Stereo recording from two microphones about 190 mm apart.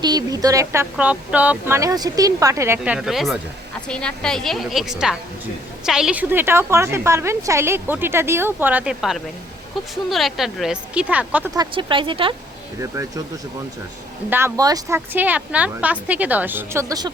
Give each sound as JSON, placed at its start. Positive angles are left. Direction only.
{"t": 0.0, "sound": "a woman's voice", "side_deg": -20}
{"t": 11.5, "sound": "speech", "side_deg": -25}
{"t": 12.8, "sound": "a woman's voice", "side_deg": -15}
{"t": 14.3, "sound": "a woman's voice", "side_deg": -10}